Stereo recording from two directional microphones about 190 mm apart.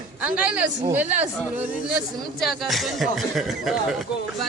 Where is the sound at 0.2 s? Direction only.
5° right (ahead or behind).